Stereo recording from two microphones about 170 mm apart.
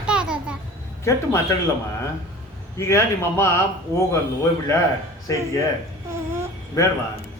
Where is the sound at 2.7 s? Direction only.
15° left (ahead or behind).